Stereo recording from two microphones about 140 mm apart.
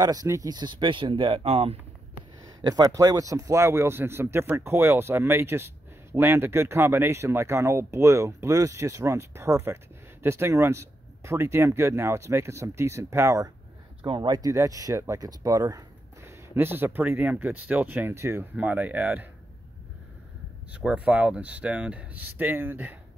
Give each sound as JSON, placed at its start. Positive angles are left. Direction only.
{"t": 0.0, "sound": "speech", "side_deg": -25}
{"t": 2.6, "sound": "speech", "side_deg": -25}
{"t": 14.0, "sound": "speech", "side_deg": -35}
{"t": 20.7, "sound": "speech", "side_deg": -10}